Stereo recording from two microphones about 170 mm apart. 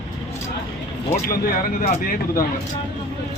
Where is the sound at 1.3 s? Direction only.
55° left (ahead or behind).